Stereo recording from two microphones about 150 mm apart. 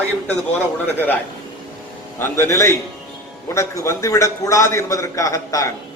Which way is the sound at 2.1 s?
15° left (ahead or behind).